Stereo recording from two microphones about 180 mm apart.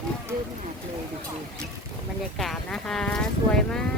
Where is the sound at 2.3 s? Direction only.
Centre (ahead or behind).